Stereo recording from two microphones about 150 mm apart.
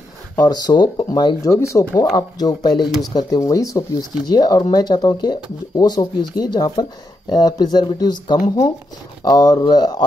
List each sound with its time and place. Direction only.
0.5 s speech: 30° left (ahead or behind)